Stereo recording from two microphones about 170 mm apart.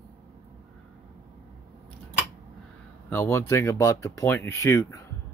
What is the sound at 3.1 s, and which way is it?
Speech, 15° left (ahead or behind).